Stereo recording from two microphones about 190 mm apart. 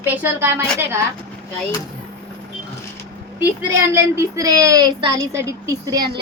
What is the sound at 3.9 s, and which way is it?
Speech, 15° right (ahead or behind).